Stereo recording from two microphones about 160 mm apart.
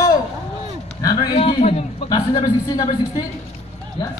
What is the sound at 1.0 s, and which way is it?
A man's voice, 25° left (ahead or behind).